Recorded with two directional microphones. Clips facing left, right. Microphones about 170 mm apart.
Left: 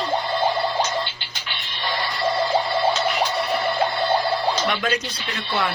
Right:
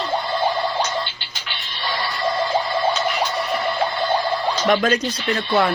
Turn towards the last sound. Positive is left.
turn(degrees=-40)  # may be behind; listen again after turning